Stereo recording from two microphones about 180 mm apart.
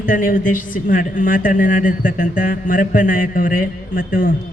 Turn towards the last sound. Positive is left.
turn(degrees=50)  # may be behind; listen again after turning